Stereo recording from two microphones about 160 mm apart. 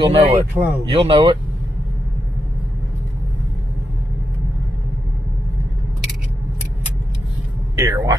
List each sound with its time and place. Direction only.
0.0 s speech: 35° right (ahead or behind)
7.7 s speech: 20° right (ahead or behind)